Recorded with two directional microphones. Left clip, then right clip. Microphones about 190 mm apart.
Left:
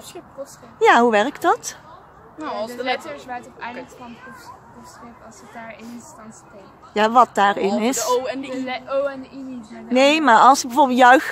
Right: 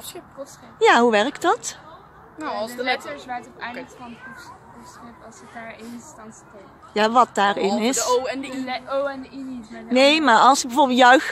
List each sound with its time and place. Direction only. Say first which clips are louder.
0.7 s speech: left 1 dB; centre (ahead or behind)
2.3 s a man's voice: even; 10° right (ahead or behind)
3.2 s a woman's voice: even; 20° left (ahead or behind)
6.9 s speech: left 2 dB; centre (ahead or behind)
8.1 s a man's voice: even; 15° right (ahead or behind)
8.5 s a woman's voice: left 3 dB; 20° left (ahead or behind)
9.9 s speech: left 1 dB; centre (ahead or behind)